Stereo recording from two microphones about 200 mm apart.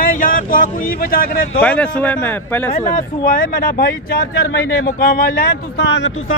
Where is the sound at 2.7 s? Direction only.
40° left (ahead or behind).